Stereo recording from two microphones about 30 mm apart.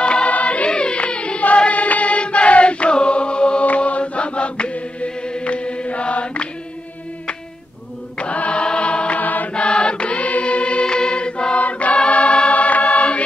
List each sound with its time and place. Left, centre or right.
0.0 s music: left
0.3 s music: left
0.7 s music: left
1.7 s chant: left
3.6 s mantra: left
4.0 s chant: left
8.2 s chant: left
8.6 s music: left
9.2 s music: left
9.5 s choir: left
11.5 s choir: left
12.4 s music: left